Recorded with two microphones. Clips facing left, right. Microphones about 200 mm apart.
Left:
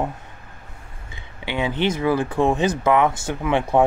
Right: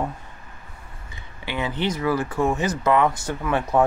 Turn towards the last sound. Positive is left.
turn(degrees=25)  # may be behind; listen again after turning